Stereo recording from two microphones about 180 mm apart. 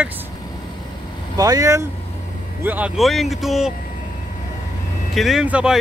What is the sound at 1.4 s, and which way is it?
Speech, 20° right (ahead or behind).